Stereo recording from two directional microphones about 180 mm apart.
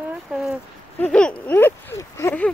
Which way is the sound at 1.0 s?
5° left (ahead or behind).